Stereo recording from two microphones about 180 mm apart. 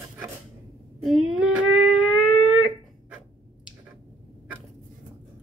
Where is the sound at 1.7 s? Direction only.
25° left (ahead or behind).